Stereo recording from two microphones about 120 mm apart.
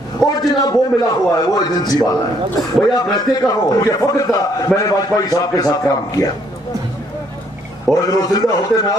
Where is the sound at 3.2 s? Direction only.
30° left (ahead or behind).